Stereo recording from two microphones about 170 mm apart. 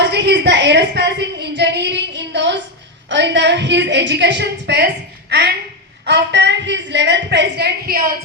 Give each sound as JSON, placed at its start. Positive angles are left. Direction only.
{"t": 0.0, "sound": "a sound", "side_deg": -90}
{"t": 3.1, "sound": "a woman's voice", "side_deg": -90}
{"t": 6.1, "sound": "a woman's voice", "side_deg": -90}